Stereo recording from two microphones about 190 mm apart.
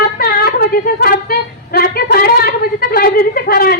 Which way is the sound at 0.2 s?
55° left (ahead or behind).